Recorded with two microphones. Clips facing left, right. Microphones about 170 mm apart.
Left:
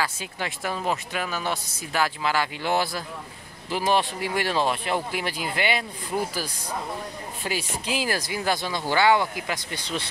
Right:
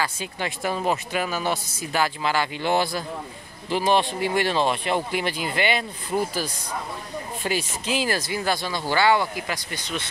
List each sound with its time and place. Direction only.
0.0 s speech: centre (ahead or behind)
7.4 s speech: 10° left (ahead or behind)
9.5 s speech: 25° left (ahead or behind)